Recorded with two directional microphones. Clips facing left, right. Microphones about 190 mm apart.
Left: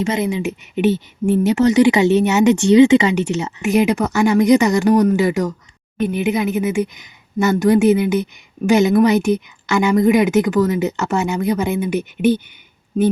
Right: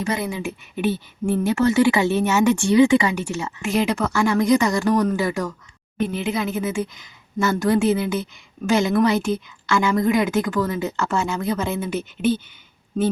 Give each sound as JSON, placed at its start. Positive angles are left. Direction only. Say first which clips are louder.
{"t": 0.0, "sound": "a woman's voice", "louder": "left 6 dB", "side_deg": 20}